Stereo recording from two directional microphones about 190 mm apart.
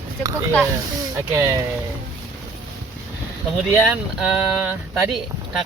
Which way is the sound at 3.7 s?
5° left (ahead or behind).